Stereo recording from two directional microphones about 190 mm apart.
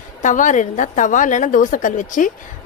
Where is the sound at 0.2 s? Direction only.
40° left (ahead or behind).